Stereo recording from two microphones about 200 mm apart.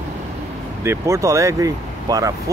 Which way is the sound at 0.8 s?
15° right (ahead or behind).